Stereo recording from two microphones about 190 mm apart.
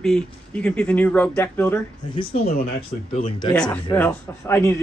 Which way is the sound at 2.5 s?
50° left (ahead or behind).